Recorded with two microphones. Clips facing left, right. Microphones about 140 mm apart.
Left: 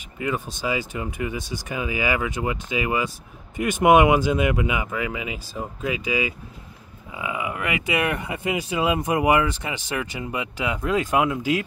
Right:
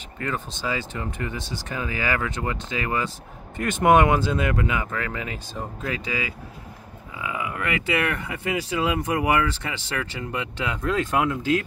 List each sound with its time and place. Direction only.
0.2 s speech: 10° left (ahead or behind)